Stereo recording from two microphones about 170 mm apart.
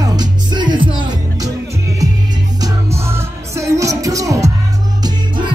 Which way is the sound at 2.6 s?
15° right (ahead or behind).